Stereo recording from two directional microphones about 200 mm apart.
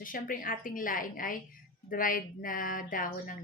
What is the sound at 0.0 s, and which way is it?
A woman's voice, 45° left (ahead or behind).